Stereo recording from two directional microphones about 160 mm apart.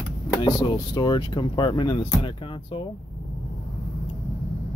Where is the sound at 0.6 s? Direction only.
30° left (ahead or behind).